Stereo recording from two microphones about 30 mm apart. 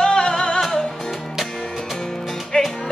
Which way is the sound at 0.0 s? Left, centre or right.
Left.